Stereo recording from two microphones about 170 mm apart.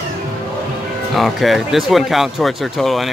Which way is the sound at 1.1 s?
Centre (ahead or behind).